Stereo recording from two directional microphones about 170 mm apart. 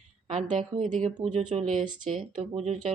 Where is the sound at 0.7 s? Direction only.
45° right (ahead or behind).